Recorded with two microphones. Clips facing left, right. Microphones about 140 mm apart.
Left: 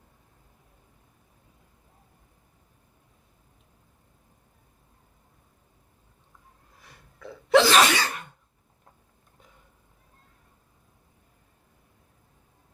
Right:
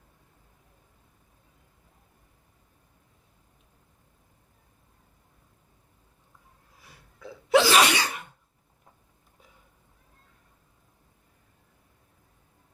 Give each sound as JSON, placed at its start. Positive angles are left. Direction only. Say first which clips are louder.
{"t": 7.2, "sound": "sneeze", "louder": "left 2 dB", "side_deg": -5}